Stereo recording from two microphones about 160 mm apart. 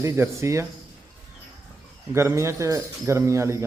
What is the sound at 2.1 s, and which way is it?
A man's voice, 15° right (ahead or behind).